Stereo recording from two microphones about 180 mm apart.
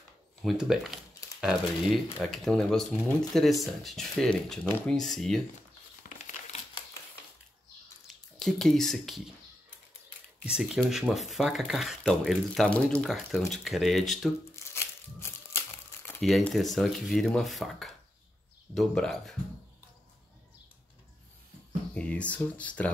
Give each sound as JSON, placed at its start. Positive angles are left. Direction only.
{"t": 0.4, "sound": "speech", "side_deg": 0}
{"t": 6.0, "sound": "crumpling", "side_deg": 45}
{"t": 8.1, "sound": "speech", "side_deg": 0}
{"t": 10.4, "sound": "speech", "side_deg": -5}
{"t": 14.5, "sound": "crumpling", "side_deg": 15}
{"t": 16.2, "sound": "speech", "side_deg": 0}
{"t": 21.9, "sound": "speech", "side_deg": 5}